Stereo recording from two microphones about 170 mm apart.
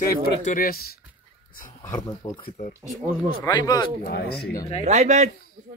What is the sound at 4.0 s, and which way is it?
Speech, 65° left (ahead or behind).